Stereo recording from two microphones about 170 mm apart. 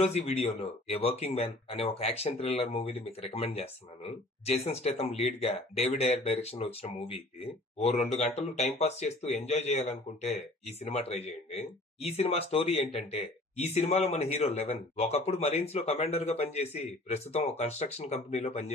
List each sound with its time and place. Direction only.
0.0 s speech: 40° left (ahead or behind)